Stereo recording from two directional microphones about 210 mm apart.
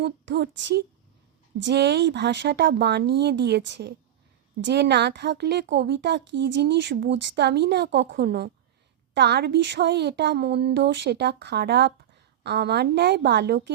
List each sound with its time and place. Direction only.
0.0 s a woman's voice: 50° right (ahead or behind)